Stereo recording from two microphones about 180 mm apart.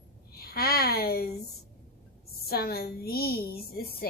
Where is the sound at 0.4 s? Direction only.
60° left (ahead or behind).